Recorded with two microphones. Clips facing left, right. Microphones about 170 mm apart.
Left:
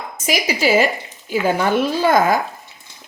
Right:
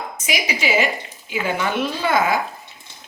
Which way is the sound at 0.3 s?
40° left (ahead or behind).